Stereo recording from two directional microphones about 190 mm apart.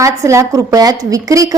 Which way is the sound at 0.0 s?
15° right (ahead or behind).